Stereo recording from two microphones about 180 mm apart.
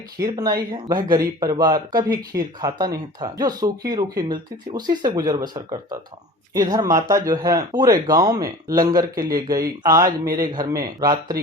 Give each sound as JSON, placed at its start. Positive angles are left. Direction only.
{"t": 0.3, "sound": "speech", "side_deg": -20}